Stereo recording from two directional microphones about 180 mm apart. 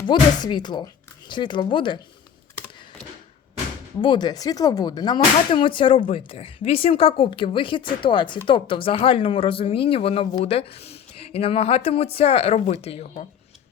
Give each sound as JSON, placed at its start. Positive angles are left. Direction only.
{"t": 0.0, "sound": "speech", "side_deg": 25}
{"t": 4.0, "sound": "speech", "side_deg": 25}